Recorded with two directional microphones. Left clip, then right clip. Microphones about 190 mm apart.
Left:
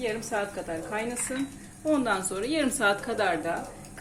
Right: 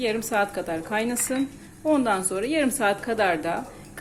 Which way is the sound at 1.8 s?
25° right (ahead or behind).